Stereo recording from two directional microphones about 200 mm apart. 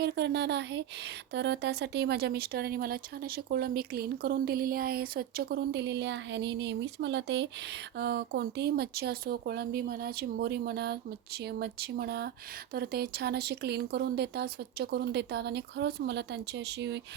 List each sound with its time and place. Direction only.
0.0 s speech: 55° right (ahead or behind)